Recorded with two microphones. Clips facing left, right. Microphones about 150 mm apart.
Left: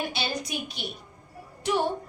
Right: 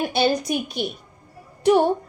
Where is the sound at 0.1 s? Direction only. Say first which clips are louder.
Right 11 dB; 50° right (ahead or behind).